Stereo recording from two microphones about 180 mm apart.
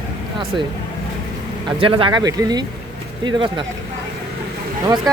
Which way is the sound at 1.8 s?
30° right (ahead or behind).